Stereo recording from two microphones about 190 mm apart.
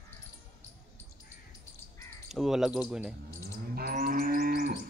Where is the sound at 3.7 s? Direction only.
50° right (ahead or behind).